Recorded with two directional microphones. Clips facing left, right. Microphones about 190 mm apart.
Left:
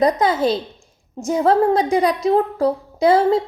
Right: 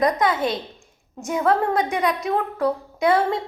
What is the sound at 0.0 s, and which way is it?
A woman's voice, 30° left (ahead or behind).